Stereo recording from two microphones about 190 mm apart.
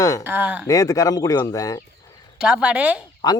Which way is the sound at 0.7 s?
20° left (ahead or behind).